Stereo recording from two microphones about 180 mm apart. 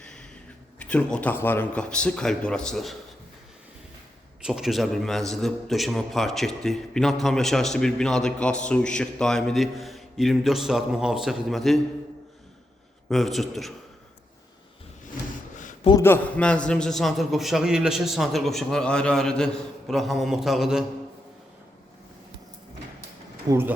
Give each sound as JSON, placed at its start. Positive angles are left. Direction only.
{"t": 0.0, "sound": "a sound", "side_deg": 5}
{"t": 0.8, "sound": "a man's voice", "side_deg": 5}
{"t": 4.4, "sound": "a man's voice", "side_deg": 0}
{"t": 13.1, "sound": "a man's voice", "side_deg": 0}
{"t": 16.0, "sound": "a man's voice", "side_deg": 10}
{"t": 23.5, "sound": "speech", "side_deg": -10}